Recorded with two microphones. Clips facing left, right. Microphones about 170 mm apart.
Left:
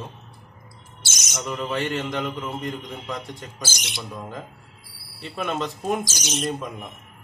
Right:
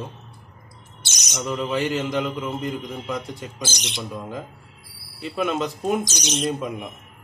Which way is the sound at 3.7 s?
20° right (ahead or behind).